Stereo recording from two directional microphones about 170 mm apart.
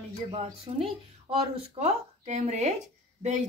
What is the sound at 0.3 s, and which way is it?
Speech, 35° right (ahead or behind).